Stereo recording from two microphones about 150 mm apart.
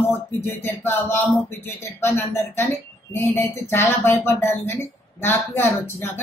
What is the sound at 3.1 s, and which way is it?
Speech, 15° left (ahead or behind).